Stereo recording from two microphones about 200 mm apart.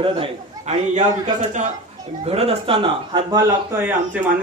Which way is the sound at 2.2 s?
30° right (ahead or behind).